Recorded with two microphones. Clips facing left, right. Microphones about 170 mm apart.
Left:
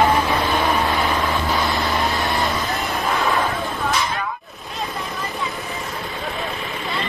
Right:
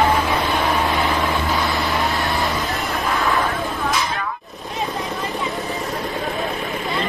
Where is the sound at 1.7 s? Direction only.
Centre (ahead or behind).